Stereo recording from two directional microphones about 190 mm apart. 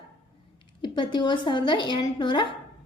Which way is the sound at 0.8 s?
25° left (ahead or behind).